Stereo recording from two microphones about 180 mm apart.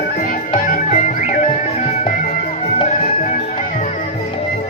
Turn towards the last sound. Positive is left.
turn(degrees=40)  # may be behind; listen again after turning